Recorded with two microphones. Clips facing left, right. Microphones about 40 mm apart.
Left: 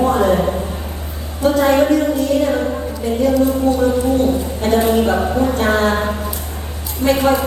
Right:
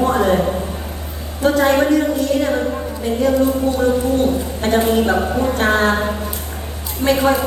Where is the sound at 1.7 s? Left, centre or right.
Centre.